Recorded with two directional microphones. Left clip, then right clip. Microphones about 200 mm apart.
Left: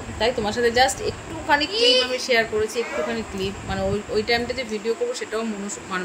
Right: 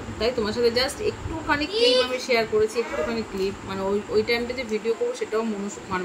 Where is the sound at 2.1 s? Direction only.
5° right (ahead or behind).